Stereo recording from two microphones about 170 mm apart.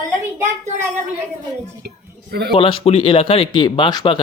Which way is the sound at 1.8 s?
75° right (ahead or behind).